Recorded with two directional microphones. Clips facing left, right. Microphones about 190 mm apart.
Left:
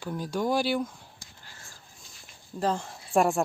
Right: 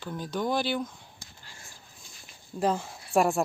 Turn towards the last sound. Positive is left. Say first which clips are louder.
# even
turn(degrees=0)  # may be behind; listen again after turning